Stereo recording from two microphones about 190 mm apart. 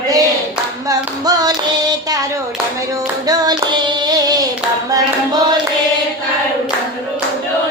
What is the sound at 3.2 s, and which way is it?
Child singing, 20° right (ahead or behind).